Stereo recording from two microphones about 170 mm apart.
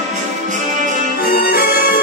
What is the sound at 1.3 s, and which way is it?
Music, 60° left (ahead or behind).